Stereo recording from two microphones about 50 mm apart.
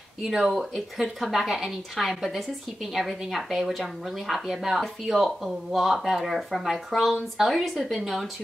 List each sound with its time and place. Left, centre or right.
0.2 s a woman's voice: centre